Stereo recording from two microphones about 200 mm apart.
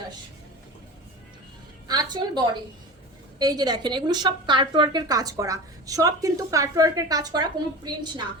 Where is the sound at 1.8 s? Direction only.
20° right (ahead or behind).